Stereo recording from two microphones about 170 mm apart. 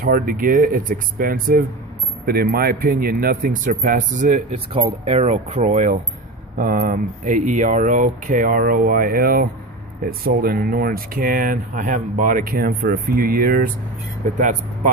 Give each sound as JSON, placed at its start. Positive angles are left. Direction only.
{"t": 0.0, "sound": "speech", "side_deg": -55}
{"t": 4.5, "sound": "speech", "side_deg": -35}